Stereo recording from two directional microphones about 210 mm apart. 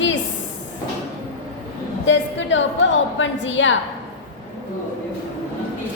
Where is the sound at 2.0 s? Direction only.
60° left (ahead or behind).